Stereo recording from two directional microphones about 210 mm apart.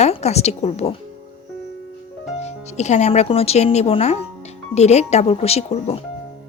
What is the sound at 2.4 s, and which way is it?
Speech, 30° left (ahead or behind).